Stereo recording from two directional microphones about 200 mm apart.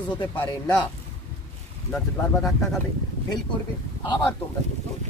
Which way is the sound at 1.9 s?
5° left (ahead or behind).